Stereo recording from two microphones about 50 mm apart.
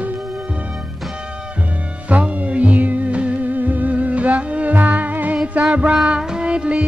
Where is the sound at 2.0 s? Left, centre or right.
Right.